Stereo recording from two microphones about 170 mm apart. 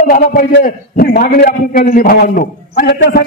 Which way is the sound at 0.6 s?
65° left (ahead or behind).